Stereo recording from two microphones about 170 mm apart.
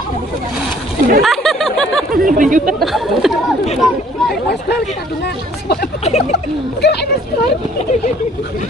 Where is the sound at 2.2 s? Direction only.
50° right (ahead or behind).